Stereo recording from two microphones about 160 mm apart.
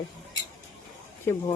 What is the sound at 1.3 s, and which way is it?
Speech, 15° left (ahead or behind).